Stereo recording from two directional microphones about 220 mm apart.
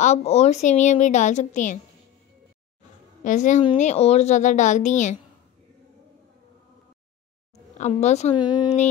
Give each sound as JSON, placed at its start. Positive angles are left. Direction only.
{"t": 0.0, "sound": "a woman's voice", "side_deg": 30}
{"t": 3.3, "sound": "a woman's voice", "side_deg": 35}
{"t": 7.7, "sound": "a woman's voice", "side_deg": 30}
{"t": 8.4, "sound": "speech", "side_deg": 20}